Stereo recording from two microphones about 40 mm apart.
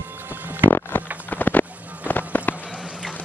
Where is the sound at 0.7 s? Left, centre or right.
Left.